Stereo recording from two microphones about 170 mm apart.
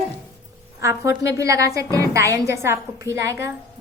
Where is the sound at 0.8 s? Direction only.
15° right (ahead or behind).